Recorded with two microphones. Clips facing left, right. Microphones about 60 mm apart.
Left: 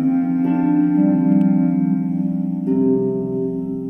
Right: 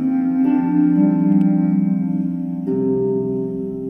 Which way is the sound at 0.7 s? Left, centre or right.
Left.